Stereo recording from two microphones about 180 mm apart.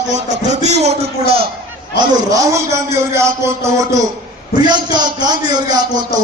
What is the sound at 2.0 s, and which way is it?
Speech, 20° right (ahead or behind).